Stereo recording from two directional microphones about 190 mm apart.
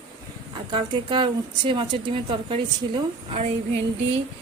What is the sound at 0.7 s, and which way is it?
Speech, 25° right (ahead or behind).